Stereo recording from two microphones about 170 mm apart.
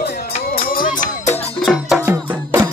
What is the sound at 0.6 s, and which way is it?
Music, 60° left (ahead or behind).